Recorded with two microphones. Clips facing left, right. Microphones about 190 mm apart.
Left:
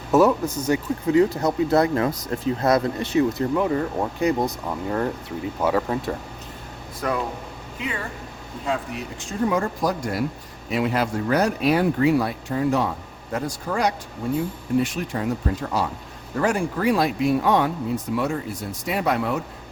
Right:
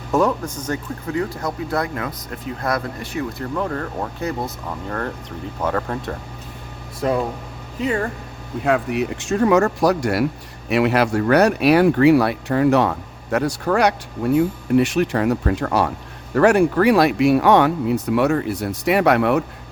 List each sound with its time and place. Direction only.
0.1 s speech: 5° left (ahead or behind)
1.1 s speech: 20° left (ahead or behind)
3.5 s speech: 10° left (ahead or behind)
7.0 s speech: 25° right (ahead or behind)
7.8 s speech: 45° right (ahead or behind)
8.6 s speech: 65° right (ahead or behind)